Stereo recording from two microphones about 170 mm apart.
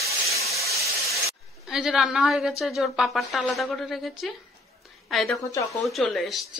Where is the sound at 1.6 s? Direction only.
Centre (ahead or behind).